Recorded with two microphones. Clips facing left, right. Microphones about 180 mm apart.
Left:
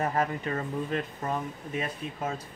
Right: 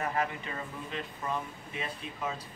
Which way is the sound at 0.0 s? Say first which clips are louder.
Left 4 dB; 40° left (ahead or behind).